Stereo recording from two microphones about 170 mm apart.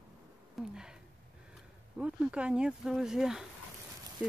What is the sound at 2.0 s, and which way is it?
Speech, 5° right (ahead or behind).